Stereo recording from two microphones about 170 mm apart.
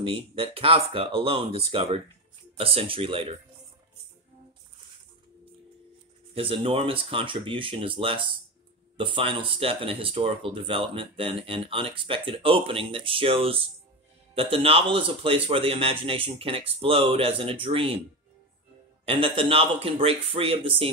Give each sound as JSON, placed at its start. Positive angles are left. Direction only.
{"t": 0.0, "sound": "speech", "side_deg": -35}
{"t": 6.3, "sound": "speech", "side_deg": -30}
{"t": 19.0, "sound": "speech", "side_deg": -35}